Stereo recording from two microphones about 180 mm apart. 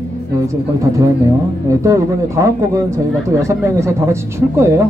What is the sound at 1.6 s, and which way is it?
Speech, 15° right (ahead or behind).